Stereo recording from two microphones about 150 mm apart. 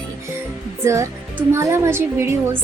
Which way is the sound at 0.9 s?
20° right (ahead or behind).